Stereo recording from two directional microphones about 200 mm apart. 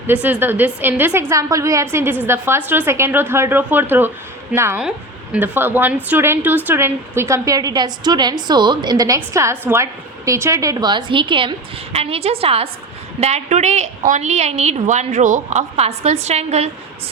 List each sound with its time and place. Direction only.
0.1 s a woman's voice: 10° right (ahead or behind); by 16.6 s 35° right (ahead or behind)